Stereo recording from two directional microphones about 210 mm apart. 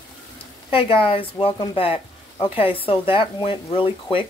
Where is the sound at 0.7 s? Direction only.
25° left (ahead or behind).